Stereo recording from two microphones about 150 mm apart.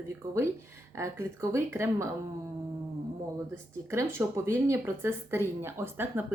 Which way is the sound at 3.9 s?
15° right (ahead or behind).